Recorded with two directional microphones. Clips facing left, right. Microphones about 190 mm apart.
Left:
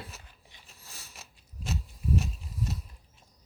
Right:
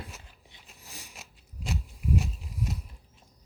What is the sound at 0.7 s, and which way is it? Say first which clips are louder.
Mechanisms: right 4 dB; 15° right (ahead or behind).